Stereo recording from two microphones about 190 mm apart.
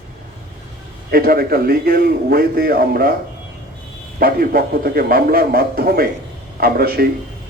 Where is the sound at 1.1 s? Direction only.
50° right (ahead or behind).